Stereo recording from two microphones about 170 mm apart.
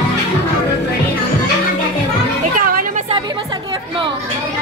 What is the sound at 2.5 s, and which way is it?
Music, 55° right (ahead or behind).